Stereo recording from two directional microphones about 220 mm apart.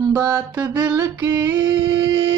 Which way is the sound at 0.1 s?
15° right (ahead or behind).